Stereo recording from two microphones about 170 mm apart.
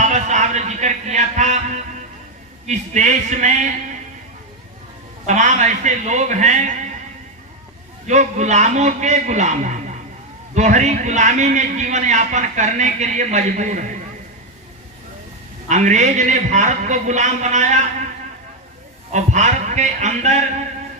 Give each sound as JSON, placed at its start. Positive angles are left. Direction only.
{"t": 0.0, "sound": "music", "side_deg": -45}
{"t": 2.6, "sound": "a man's voice", "side_deg": -45}
{"t": 5.2, "sound": "a man's voice", "side_deg": -45}
{"t": 8.0, "sound": "a man's voice", "side_deg": -45}
{"t": 15.7, "sound": "a man's voice", "side_deg": -45}
{"t": 19.1, "sound": "a man's voice", "side_deg": -45}